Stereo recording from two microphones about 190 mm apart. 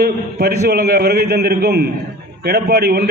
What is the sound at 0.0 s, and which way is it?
A man's voice, 55° right (ahead or behind).